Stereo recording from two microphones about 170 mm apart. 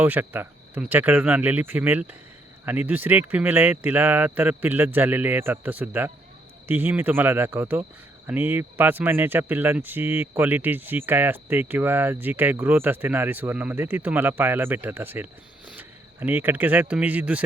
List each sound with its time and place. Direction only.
0.0 s speech: 10° right (ahead or behind)